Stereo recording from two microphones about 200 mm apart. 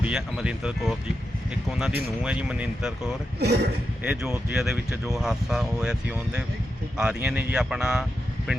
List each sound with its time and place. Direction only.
0.0 s speech: 5° right (ahead or behind)
3.4 s speech: 55° right (ahead or behind)
4.0 s speech: 5° right (ahead or behind)